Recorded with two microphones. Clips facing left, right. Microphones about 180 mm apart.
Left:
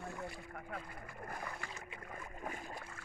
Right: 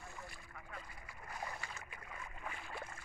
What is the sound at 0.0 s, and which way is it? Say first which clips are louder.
Boat: left 8 dB; 55° left (ahead or behind).